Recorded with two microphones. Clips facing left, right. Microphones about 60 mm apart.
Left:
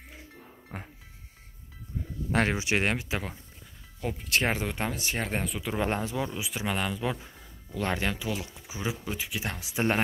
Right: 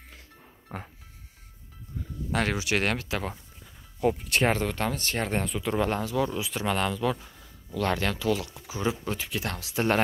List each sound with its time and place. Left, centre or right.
0.7 s music: centre
2.3 s speech: left
4.0 s speech: centre
5.9 s speech: left